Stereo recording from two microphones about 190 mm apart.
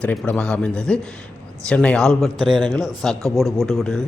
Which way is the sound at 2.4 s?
25° right (ahead or behind).